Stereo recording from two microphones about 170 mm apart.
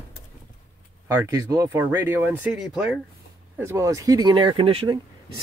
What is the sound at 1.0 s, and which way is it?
Speech, 20° right (ahead or behind).